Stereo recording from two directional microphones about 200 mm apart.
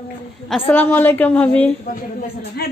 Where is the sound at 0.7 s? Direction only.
10° left (ahead or behind).